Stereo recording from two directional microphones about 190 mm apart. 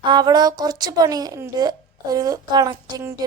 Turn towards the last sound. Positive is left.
turn(degrees=-15)  # may be behind; listen again after turning